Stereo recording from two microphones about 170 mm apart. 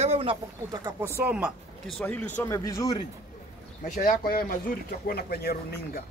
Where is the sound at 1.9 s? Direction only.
10° left (ahead or behind).